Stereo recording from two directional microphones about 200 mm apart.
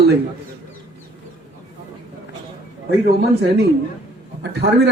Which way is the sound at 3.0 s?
55° right (ahead or behind).